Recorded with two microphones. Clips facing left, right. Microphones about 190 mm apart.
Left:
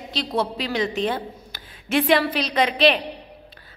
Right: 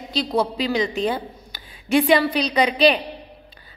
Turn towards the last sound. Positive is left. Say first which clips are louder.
# right 2 dB
turn(degrees=0)  # may be behind; listen again after turning